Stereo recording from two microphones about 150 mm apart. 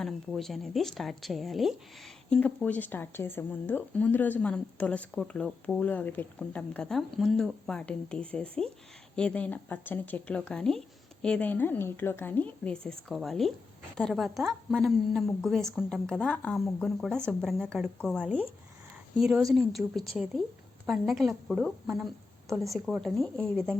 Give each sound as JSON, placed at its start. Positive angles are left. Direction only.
{"t": 0.0, "sound": "a woman's voice", "side_deg": 0}